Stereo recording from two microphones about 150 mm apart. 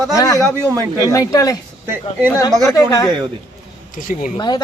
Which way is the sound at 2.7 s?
25° left (ahead or behind).